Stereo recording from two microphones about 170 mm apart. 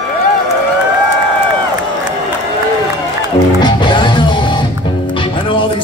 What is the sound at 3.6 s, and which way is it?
Music, 25° left (ahead or behind).